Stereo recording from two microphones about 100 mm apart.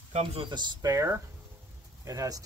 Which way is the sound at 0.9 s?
30° right (ahead or behind).